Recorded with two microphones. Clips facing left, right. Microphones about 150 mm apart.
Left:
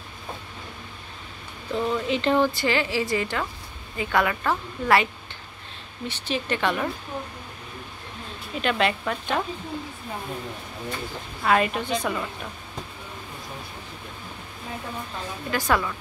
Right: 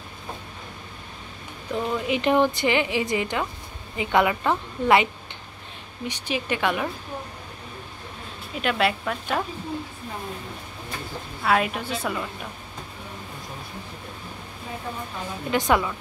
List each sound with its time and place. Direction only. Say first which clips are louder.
1.8 s a woman's voice: left 1 dB; 15° right (ahead or behind)
8.5 s a woman's voice: even; 5° right (ahead or behind)
11.4 s a woman's voice: left 1 dB; centre (ahead or behind)
15.5 s a woman's voice: right 3 dB; 20° right (ahead or behind)